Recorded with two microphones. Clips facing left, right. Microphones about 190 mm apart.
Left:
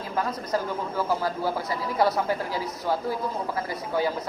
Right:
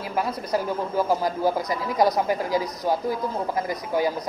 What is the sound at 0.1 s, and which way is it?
Speech, 10° right (ahead or behind).